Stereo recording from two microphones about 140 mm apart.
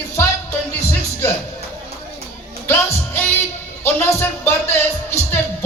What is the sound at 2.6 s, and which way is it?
Music, 15° left (ahead or behind).